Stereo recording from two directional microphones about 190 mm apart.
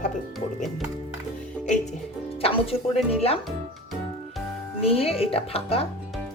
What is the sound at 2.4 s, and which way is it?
Speech, 30° left (ahead or behind).